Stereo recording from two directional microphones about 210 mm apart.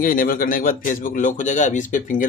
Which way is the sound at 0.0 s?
40° left (ahead or behind).